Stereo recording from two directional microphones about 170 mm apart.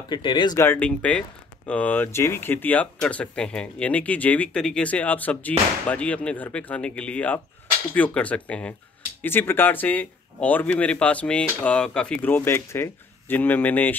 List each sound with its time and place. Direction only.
0.1 s speech: 25° left (ahead or behind)
0.6 s speech: 10° left (ahead or behind)